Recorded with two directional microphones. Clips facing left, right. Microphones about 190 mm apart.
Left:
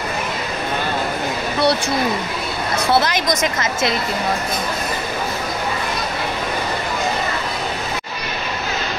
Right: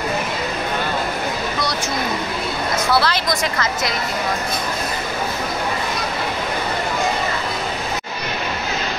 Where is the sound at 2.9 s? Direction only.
20° left (ahead or behind).